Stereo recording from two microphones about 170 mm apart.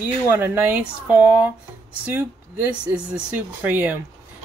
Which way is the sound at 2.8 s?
5° right (ahead or behind).